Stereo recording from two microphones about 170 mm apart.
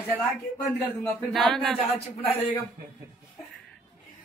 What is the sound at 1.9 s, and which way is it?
Speech, 35° left (ahead or behind).